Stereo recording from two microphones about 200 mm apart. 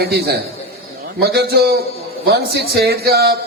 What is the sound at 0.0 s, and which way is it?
A man's voice, 55° right (ahead or behind).